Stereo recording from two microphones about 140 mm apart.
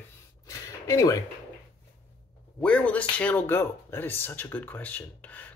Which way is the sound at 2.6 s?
10° left (ahead or behind).